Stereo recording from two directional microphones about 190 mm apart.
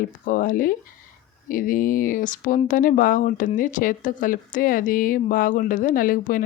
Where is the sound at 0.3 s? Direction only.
45° left (ahead or behind).